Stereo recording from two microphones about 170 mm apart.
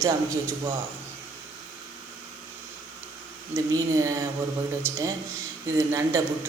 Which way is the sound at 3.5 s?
20° right (ahead or behind).